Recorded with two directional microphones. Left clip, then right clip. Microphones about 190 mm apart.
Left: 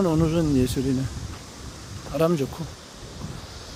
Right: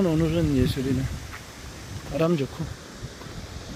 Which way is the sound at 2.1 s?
20° left (ahead or behind).